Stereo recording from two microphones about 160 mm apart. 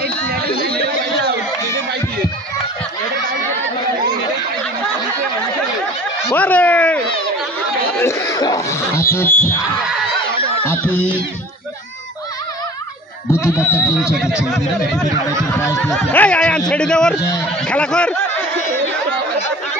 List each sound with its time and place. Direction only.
0.0 s chatter: 75° right (ahead or behind)
6.3 s a sound: 10° left (ahead or behind)
8.0 s a sound: 15° left (ahead or behind)
9.1 s speech: 15° left (ahead or behind)
13.7 s speech: 20° left (ahead or behind)
14.1 s a man's voice: centre (ahead or behind)
15.5 s speech: 20° left (ahead or behind)
15.9 s a man's voice: 10° left (ahead or behind)